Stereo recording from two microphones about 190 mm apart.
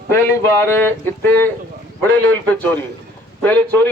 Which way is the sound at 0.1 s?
15° left (ahead or behind).